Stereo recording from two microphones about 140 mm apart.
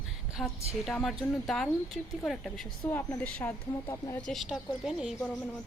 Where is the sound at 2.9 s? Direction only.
15° left (ahead or behind).